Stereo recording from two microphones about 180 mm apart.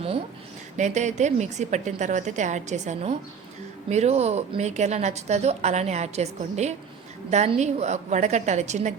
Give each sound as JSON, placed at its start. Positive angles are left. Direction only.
{"t": 0.8, "sound": "a woman's voice", "side_deg": -40}